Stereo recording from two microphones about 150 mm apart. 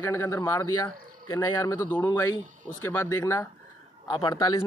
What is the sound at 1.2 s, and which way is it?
Speech, 30° left (ahead or behind).